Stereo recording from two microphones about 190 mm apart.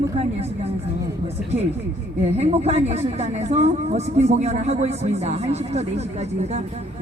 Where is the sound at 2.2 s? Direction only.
35° right (ahead or behind).